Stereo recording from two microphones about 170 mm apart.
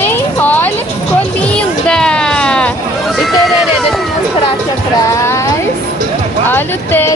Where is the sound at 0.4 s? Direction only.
10° left (ahead or behind).